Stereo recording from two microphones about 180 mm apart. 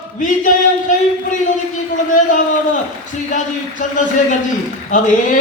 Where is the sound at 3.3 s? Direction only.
45° left (ahead or behind).